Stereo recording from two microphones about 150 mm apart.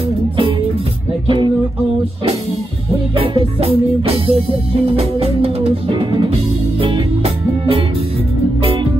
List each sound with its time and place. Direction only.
1.2 s music: 35° right (ahead or behind)
3.2 s music: 40° right (ahead or behind)